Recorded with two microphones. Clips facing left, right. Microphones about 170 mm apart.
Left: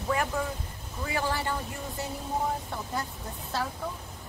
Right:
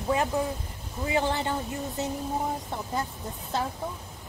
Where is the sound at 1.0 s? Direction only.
20° right (ahead or behind).